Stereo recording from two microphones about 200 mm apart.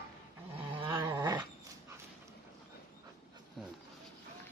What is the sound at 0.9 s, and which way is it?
Dog, 15° right (ahead or behind).